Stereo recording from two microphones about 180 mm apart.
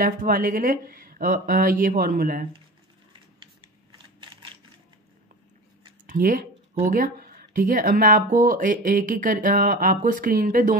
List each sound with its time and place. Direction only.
0.0 s speech: 50° right (ahead or behind)
6.0 s speech: 50° right (ahead or behind)